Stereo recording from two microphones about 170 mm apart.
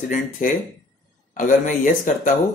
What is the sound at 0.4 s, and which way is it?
Speech, 55° left (ahead or behind).